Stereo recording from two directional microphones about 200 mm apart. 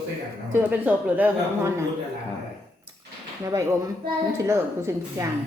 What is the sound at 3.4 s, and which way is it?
A woman's voice, 15° right (ahead or behind).